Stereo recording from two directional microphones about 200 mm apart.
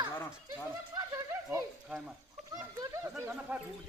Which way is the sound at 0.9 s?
20° right (ahead or behind).